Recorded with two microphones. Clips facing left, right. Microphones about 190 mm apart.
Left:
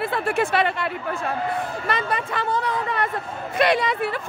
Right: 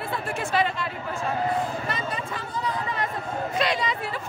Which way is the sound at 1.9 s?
70° left (ahead or behind).